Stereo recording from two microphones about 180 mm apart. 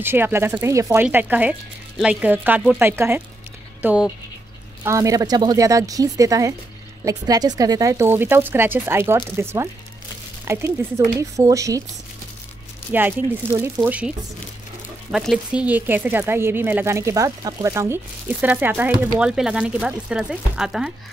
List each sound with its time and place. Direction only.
0.0 s speech: 10° right (ahead or behind)
4.8 s a woman's voice: 15° right (ahead or behind)
12.9 s speech: 10° right (ahead or behind)